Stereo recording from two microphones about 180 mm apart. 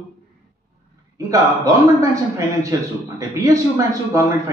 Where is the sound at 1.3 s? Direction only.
15° right (ahead or behind).